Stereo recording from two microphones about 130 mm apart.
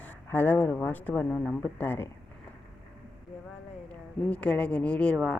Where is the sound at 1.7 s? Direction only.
15° left (ahead or behind).